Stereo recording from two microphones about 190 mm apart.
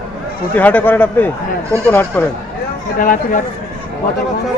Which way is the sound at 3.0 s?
45° left (ahead or behind).